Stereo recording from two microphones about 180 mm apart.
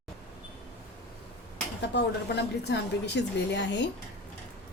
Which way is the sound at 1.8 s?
70° left (ahead or behind).